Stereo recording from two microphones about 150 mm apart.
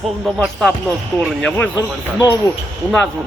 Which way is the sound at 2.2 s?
25° left (ahead or behind).